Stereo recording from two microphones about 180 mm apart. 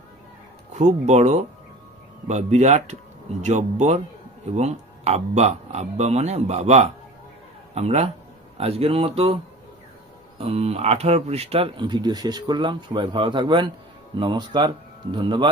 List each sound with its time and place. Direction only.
0.7 s speech: 40° right (ahead or behind)